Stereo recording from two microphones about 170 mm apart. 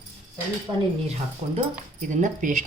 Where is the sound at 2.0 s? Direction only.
45° right (ahead or behind).